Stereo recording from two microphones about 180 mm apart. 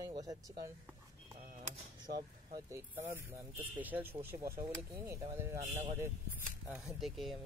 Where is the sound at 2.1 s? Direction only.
60° right (ahead or behind).